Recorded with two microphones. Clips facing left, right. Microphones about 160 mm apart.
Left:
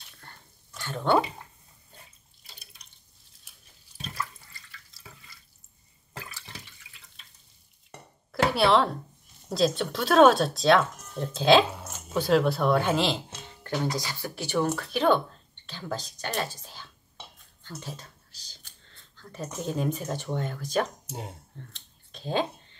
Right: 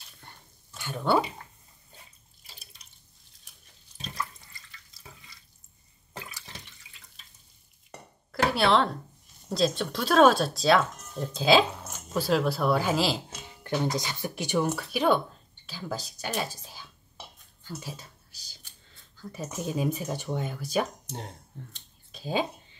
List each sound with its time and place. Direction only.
0.2 s a sound: 10° right (ahead or behind)
2.4 s drip: centre (ahead or behind)
4.0 s water: 5° left (ahead or behind)
6.1 s water: 15° right (ahead or behind)
8.3 s a sound: centre (ahead or behind)
9.5 s speech: centre (ahead or behind)
13.7 s speech: 20° right (ahead or behind)
21.1 s speech: 5° left (ahead or behind)
22.1 s a sound: 5° right (ahead or behind)